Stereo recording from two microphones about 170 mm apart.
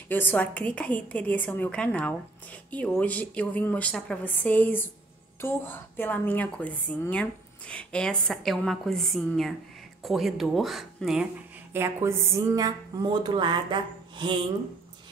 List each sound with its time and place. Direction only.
0.1 s a woman's voice: 10° left (ahead or behind); by 14.4 s 25° right (ahead or behind)